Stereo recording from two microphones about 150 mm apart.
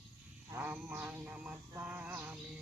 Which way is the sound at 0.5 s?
10° right (ahead or behind).